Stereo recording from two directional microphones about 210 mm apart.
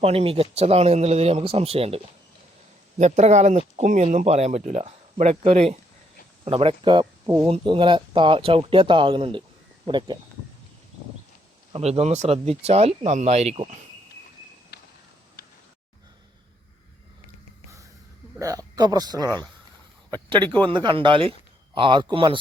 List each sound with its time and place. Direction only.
0.0 s speech: 25° right (ahead or behind)
3.0 s speech: 35° right (ahead or behind)
11.7 s speech: 30° right (ahead or behind)
14.7 s a sound: 50° left (ahead or behind)
18.3 s speech: 15° right (ahead or behind)